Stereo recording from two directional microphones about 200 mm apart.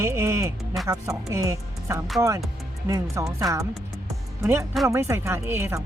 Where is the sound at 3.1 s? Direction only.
15° right (ahead or behind).